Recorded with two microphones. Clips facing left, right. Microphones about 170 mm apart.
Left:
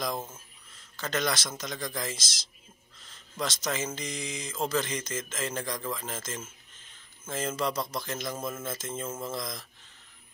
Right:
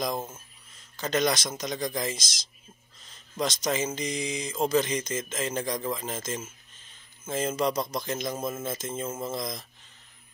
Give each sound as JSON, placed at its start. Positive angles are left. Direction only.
{"t": 0.0, "sound": "speech", "side_deg": -20}